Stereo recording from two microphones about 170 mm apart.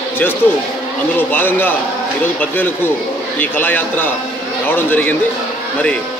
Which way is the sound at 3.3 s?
10° left (ahead or behind).